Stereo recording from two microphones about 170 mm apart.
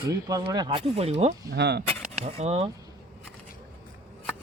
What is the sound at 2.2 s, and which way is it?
Speech, 35° right (ahead or behind).